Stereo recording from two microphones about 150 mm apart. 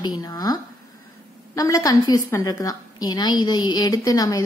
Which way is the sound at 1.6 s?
20° left (ahead or behind).